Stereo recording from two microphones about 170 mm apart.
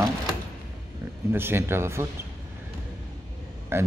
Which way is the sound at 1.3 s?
15° right (ahead or behind).